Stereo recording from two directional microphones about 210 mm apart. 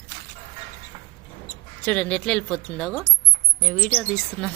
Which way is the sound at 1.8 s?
5° left (ahead or behind).